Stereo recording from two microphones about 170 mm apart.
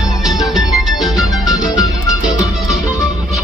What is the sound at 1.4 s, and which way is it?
Music, 20° left (ahead or behind).